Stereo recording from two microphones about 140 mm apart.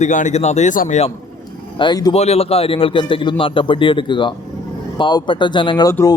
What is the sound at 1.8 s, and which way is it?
Speech, 30° left (ahead or behind).